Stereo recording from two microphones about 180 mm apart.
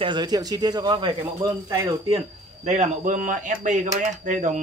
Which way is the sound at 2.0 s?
35° right (ahead or behind).